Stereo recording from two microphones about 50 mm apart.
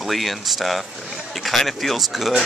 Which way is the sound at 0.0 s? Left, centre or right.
Centre.